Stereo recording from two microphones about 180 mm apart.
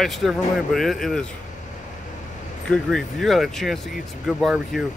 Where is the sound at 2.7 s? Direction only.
Centre (ahead or behind).